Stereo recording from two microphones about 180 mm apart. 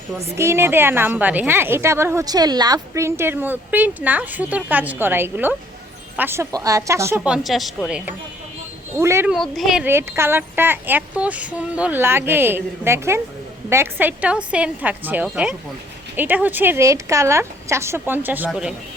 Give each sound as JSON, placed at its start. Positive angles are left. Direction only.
{"t": 0.3, "sound": "a woman's voice", "side_deg": -15}
{"t": 7.3, "sound": "a woman's voice", "side_deg": 0}
{"t": 9.3, "sound": "a woman's voice", "side_deg": 0}